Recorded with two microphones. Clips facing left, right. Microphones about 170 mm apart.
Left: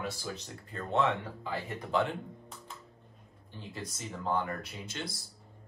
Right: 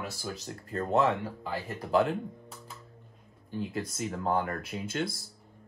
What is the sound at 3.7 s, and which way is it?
Speech, 50° right (ahead or behind).